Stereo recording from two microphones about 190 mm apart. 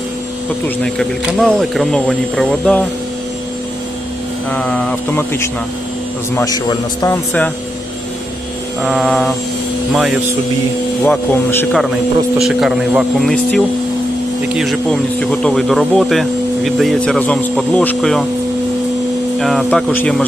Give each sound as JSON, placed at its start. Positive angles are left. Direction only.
{"t": 0.9, "sound": "speech", "side_deg": 0}
{"t": 4.5, "sound": "a man's voice", "side_deg": 5}
{"t": 7.0, "sound": "speech", "side_deg": 10}
{"t": 8.8, "sound": "speech", "side_deg": 0}
{"t": 11.0, "sound": "speech", "side_deg": 10}
{"t": 12.4, "sound": "speech", "side_deg": 0}
{"t": 19.4, "sound": "speech", "side_deg": 0}